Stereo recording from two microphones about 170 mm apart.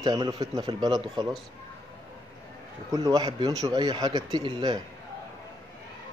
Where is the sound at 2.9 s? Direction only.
20° right (ahead or behind).